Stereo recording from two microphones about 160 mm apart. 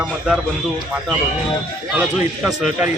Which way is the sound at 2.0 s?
Centre (ahead or behind).